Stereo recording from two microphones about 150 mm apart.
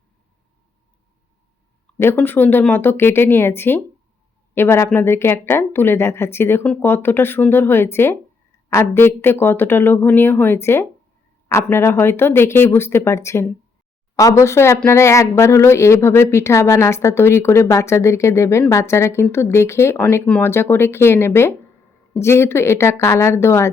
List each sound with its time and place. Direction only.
2.0 s a woman's voice: 15° left (ahead or behind)